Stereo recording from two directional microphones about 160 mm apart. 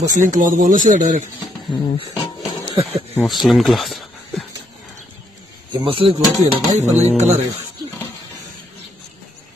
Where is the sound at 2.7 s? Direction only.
40° right (ahead or behind).